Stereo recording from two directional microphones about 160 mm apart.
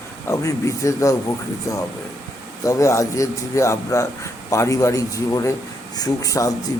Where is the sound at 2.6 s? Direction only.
20° left (ahead or behind).